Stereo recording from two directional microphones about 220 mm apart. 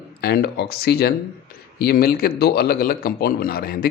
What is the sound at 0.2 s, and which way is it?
A man's voice, 45° left (ahead or behind).